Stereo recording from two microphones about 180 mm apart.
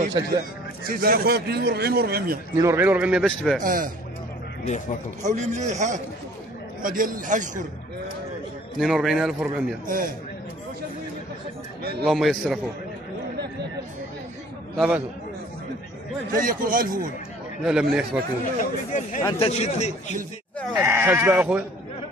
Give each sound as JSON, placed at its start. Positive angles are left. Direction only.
{"t": 0.2, "sound": "a man's voice", "side_deg": -25}
{"t": 0.8, "sound": "a man's voice", "side_deg": -55}
{"t": 2.5, "sound": "a man's voice", "side_deg": -15}
{"t": 3.6, "sound": "a man's voice", "side_deg": -50}
{"t": 5.2, "sound": "a man's voice", "side_deg": -40}
{"t": 8.7, "sound": "a man's voice", "side_deg": 0}
{"t": 11.8, "sound": "a man's voice", "side_deg": -60}
{"t": 12.1, "sound": "a man's voice", "side_deg": 0}
{"t": 14.8, "sound": "a man's voice", "side_deg": -5}
{"t": 16.3, "sound": "a man's voice", "side_deg": -50}
{"t": 17.6, "sound": "a man's voice", "side_deg": -5}
{"t": 18.4, "sound": "a man's voice", "side_deg": 45}
{"t": 20.7, "sound": "a man's voice", "side_deg": -15}